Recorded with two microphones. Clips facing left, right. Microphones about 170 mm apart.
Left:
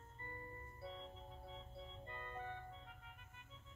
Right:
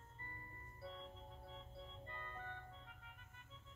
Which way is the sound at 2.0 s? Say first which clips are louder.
Left 5 dB; 15° left (ahead or behind).